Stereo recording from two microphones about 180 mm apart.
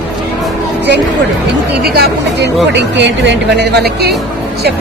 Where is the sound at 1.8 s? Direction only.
60° right (ahead or behind).